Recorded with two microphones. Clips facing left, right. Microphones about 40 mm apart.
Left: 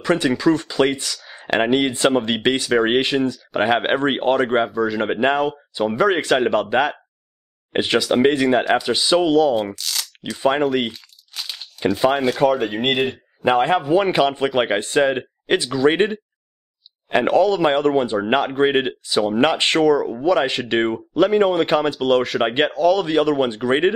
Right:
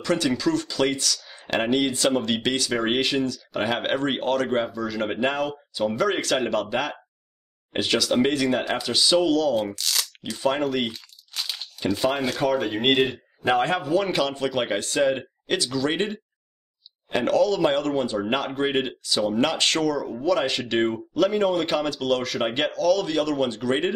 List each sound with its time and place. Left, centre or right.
0.0 s speech: left
9.8 s crunch: centre
10.4 s speech: left
10.9 s crunch: centre
12.2 s speech: centre
13.4 s speech: centre